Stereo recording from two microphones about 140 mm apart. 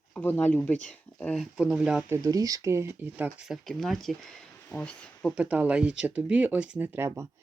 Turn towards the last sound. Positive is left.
turn(degrees=-20)  # may be behind; listen again after turning